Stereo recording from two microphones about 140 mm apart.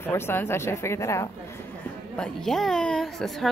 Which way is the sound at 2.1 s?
5° left (ahead or behind).